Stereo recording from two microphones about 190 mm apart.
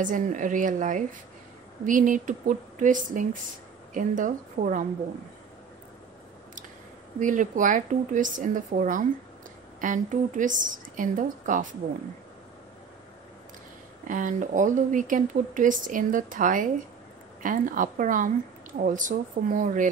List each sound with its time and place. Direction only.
0.0 s speech: 45° right (ahead or behind)
7.2 s speech: 40° right (ahead or behind)
14.0 s speech: 45° right (ahead or behind)